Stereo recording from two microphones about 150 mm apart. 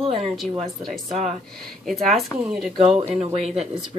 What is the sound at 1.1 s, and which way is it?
Speech, 50° right (ahead or behind).